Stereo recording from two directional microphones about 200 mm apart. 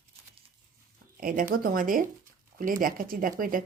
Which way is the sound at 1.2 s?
45° right (ahead or behind).